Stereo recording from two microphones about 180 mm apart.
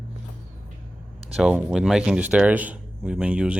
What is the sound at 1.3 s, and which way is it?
Speech, 5° right (ahead or behind).